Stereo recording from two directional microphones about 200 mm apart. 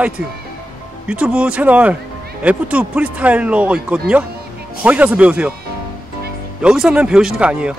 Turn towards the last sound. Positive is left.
turn(degrees=-5)  # may be behind; listen again after turning